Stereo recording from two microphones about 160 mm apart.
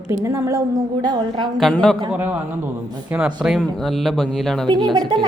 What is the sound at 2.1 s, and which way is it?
A man's voice, 10° right (ahead or behind).